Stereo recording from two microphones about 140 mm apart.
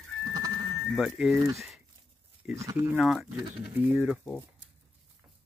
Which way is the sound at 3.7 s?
15° right (ahead or behind).